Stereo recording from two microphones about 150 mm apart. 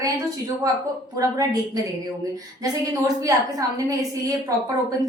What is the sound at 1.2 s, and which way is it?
Speech, 20° right (ahead or behind).